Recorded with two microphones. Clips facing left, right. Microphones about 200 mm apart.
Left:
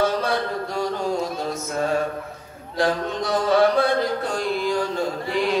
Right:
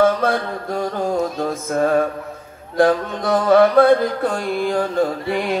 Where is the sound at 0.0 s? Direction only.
50° right (ahead or behind).